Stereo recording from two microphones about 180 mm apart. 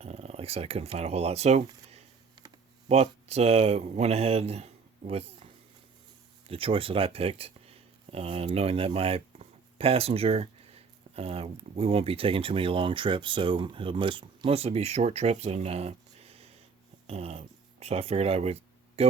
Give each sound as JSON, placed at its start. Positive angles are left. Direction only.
{"t": 0.0, "sound": "speech", "side_deg": -35}
{"t": 6.5, "sound": "speech", "side_deg": -30}